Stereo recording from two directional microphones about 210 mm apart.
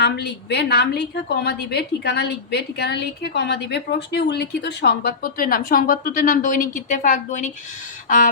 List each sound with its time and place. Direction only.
0.0 s a woman's voice: 55° left (ahead or behind); by 7.5 s 35° left (ahead or behind)